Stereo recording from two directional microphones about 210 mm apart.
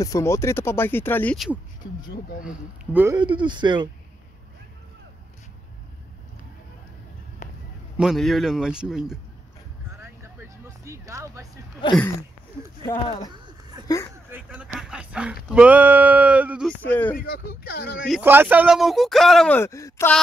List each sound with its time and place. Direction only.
0.0 s speech: 15° left (ahead or behind)
2.4 s a sound: 5° right (ahead or behind)
3.2 s speech: 20° right (ahead or behind)
8.0 s speech: centre (ahead or behind)
9.9 s a sound: 10° right (ahead or behind)
11.8 s speech: 20° left (ahead or behind)
14.3 s a sound: 5° right (ahead or behind)
16.8 s speech: 10° left (ahead or behind)
17.2 s speech: 45° left (ahead or behind)
18.0 s speech: 5° right (ahead or behind); by 20.2 s 15° left (ahead or behind)